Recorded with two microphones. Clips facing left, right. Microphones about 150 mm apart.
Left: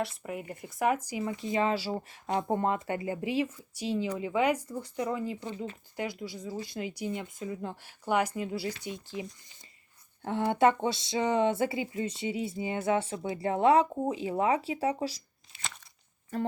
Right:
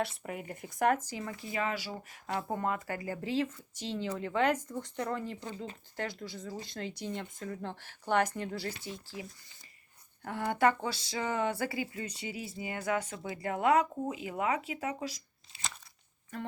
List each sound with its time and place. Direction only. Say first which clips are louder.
0.0 s speech: left 1 dB; centre (ahead or behind); by 9.2 s 20° left (ahead or behind)
10.2 s speech: left 4 dB; 25° left (ahead or behind)
16.3 s a sound: left 8 dB; 35° left (ahead or behind)